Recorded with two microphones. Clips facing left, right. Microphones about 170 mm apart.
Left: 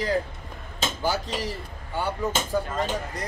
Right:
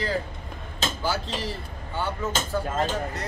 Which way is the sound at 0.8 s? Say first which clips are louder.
Left 1 dB; 15° left (ahead or behind).